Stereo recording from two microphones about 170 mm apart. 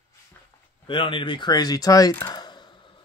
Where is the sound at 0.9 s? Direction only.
30° left (ahead or behind); by 2.4 s 15° left (ahead or behind).